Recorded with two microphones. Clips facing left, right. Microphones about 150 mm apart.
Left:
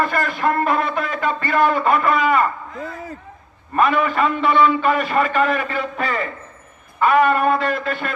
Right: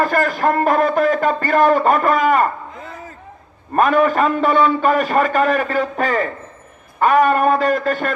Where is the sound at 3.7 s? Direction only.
45° right (ahead or behind).